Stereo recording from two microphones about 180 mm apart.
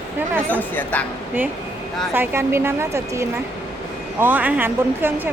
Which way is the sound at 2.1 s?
10° right (ahead or behind).